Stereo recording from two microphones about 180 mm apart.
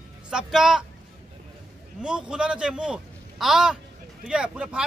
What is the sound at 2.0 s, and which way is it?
A man's voice, 5° right (ahead or behind).